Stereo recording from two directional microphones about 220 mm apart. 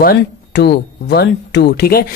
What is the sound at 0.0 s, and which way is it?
Speech, 45° left (ahead or behind).